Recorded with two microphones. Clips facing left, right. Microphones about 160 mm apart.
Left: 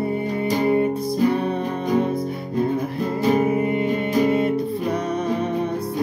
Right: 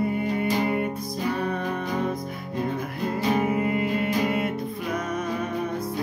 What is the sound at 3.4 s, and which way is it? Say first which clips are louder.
Music: left 4 dB; 30° left (ahead or behind).